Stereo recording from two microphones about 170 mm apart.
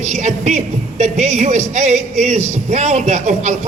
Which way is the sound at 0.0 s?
45° right (ahead or behind).